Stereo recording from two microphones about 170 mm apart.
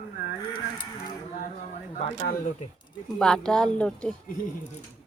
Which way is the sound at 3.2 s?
5° left (ahead or behind).